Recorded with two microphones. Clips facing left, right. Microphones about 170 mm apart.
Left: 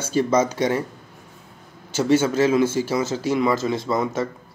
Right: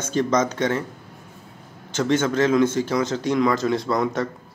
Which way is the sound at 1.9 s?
10° left (ahead or behind).